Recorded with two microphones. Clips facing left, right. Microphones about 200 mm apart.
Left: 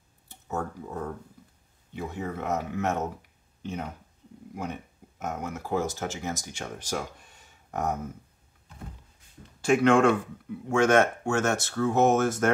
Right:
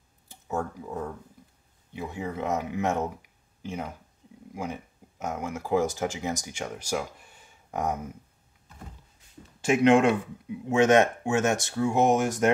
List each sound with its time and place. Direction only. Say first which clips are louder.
0.5 s speech: right 2 dB; 10° right (ahead or behind)
5.3 s speech: right 3 dB; 10° right (ahead or behind)
9.6 s speech: right 1 dB; 20° right (ahead or behind)